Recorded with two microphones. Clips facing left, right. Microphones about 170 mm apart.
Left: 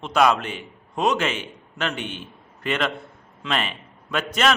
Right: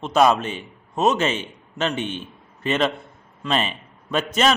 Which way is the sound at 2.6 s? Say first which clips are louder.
Right 3 dB; 20° right (ahead or behind).